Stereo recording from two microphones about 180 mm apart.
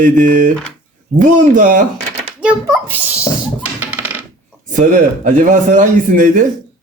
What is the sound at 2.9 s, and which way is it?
Sneeze, 10° right (ahead or behind).